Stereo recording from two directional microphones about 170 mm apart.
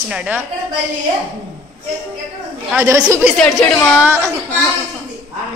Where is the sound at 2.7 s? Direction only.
20° right (ahead or behind).